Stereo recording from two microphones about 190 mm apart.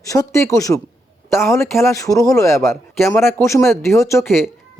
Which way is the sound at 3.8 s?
15° left (ahead or behind).